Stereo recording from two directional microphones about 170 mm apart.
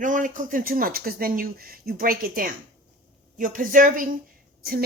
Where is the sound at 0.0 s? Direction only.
50° right (ahead or behind).